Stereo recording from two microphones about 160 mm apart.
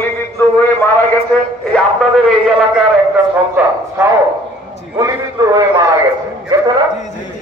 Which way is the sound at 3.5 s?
15° right (ahead or behind).